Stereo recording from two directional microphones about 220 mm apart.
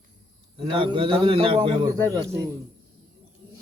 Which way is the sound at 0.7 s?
25° right (ahead or behind).